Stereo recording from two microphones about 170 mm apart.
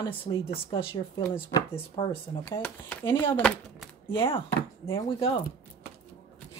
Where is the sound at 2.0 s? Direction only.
30° left (ahead or behind).